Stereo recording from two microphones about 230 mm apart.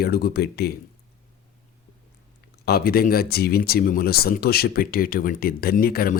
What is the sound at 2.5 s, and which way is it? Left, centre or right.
Speech, left.